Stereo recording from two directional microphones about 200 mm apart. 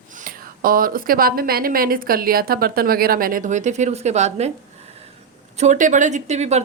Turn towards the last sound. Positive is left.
turn(degrees=-35)  # may be behind; listen again after turning